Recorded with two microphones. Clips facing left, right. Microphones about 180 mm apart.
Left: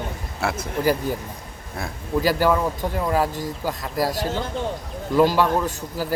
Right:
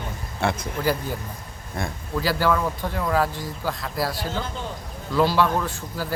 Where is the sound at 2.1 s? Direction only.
15° left (ahead or behind).